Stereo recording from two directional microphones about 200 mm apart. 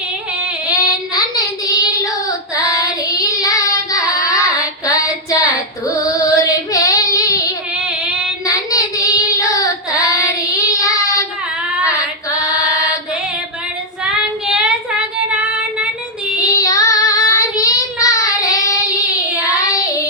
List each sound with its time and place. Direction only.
1.6 s child singing: 15° left (ahead or behind)
7.9 s child singing: 5° right (ahead or behind)
8.4 s child singing: 15° left (ahead or behind)
11.8 s female singing: 15° left (ahead or behind)
14.0 s child singing: 5° right (ahead or behind)
16.4 s child singing: 15° left (ahead or behind)